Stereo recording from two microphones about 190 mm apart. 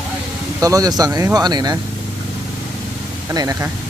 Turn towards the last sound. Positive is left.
turn(degrees=-20)  # may be behind; listen again after turning